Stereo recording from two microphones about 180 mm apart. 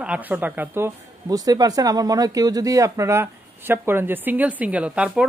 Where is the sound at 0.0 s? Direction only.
5° right (ahead or behind).